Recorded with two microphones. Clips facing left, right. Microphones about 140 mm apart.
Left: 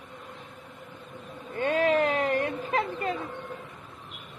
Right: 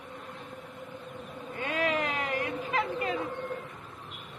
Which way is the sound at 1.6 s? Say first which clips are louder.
Left 6 dB; 35° left (ahead or behind).